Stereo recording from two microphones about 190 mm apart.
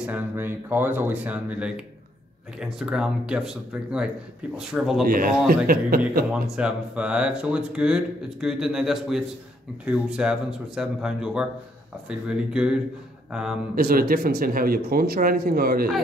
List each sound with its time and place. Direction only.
0.0 s speech: 10° right (ahead or behind)
5.0 s speech: 50° right (ahead or behind)
6.4 s speech: 5° right (ahead or behind)
13.7 s speech: 50° right (ahead or behind)